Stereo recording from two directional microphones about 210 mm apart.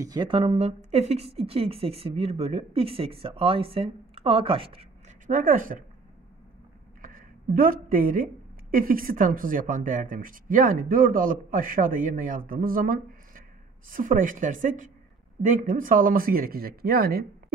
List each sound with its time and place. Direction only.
0.0 s a woman's voice: 20° right (ahead or behind); by 5.9 s 40° right (ahead or behind)
7.0 s speech: 40° right (ahead or behind)